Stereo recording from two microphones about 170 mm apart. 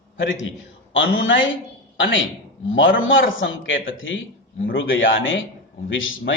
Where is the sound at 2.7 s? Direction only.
75° left (ahead or behind).